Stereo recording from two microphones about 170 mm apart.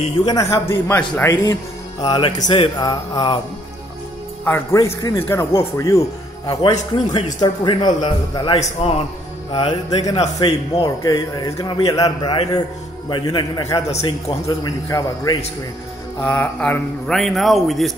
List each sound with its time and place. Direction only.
0.2 s a man's voice: 20° left (ahead or behind)
1.3 s music: 20° left (ahead or behind)
4.5 s a man's voice: 15° left (ahead or behind)
6.4 s music: 25° left (ahead or behind)
8.5 s a man's voice: 35° left (ahead or behind)
11.0 s music: 20° left (ahead or behind)
13.7 s a man's voice: 40° left (ahead or behind)
14.0 s music: 25° left (ahead or behind)
16.2 s a man's voice: 10° left (ahead or behind)